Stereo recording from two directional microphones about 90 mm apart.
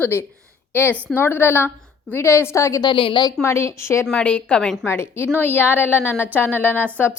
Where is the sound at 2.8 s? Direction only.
65° left (ahead or behind).